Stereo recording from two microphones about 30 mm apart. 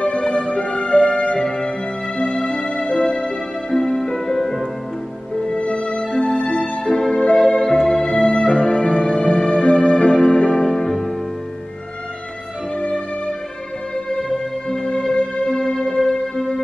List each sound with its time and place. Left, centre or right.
0.0 s music: left
3.7 s music: left
5.4 s music: left
8.5 s music: left; by 11.1 s centre
14.3 s music: left
14.9 s music: left
15.5 s music: left